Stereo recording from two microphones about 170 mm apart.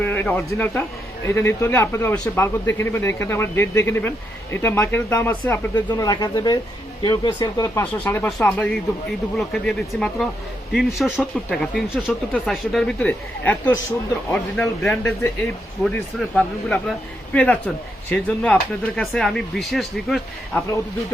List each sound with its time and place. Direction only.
0.0 s a man's voice: 10° left (ahead or behind)
5.7 s a man's voice: 25° left (ahead or behind); by 15.1 s 5° left (ahead or behind)
16.3 s a man's voice: 5° left (ahead or behind)